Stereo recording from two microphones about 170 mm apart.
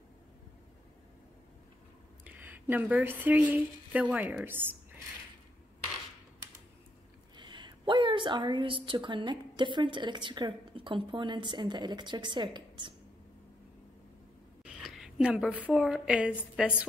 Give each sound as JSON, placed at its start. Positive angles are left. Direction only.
{"t": 2.2, "sound": "speech", "side_deg": -10}
{"t": 7.3, "sound": "a woman's voice", "side_deg": -25}
{"t": 14.6, "sound": "a woman's voice", "side_deg": 0}